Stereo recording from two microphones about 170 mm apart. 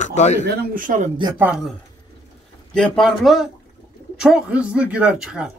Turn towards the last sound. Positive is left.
turn(degrees=-5)  # may be behind; listen again after turning